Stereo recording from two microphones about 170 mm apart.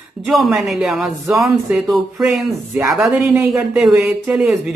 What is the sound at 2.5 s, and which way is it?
Speech, 20° right (ahead or behind).